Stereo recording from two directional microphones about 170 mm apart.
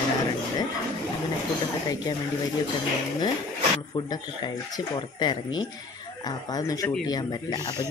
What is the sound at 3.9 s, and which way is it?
Speech, 25° left (ahead or behind).